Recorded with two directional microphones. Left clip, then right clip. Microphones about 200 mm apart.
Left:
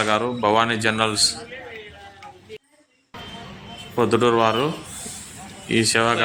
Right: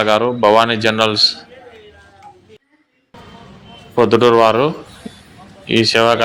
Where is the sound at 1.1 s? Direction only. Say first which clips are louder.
Right 7 dB; 15° left (ahead or behind).